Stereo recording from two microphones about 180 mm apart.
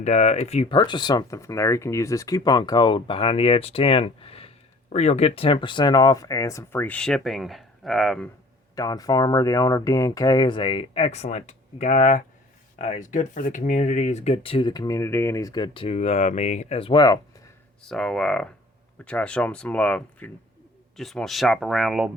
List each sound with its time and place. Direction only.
0.0 s speech: 40° left (ahead or behind)
0.8 s speech: 25° left (ahead or behind); by 8.3 s centre (ahead or behind)
8.7 s speech: 20° left (ahead or behind)
17.8 s speech: 5° left (ahead or behind)